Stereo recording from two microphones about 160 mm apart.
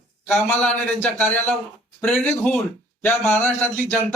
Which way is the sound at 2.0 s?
5° left (ahead or behind).